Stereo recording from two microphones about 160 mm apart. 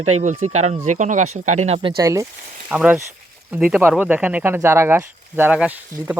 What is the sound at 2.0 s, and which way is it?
Speech, 20° right (ahead or behind).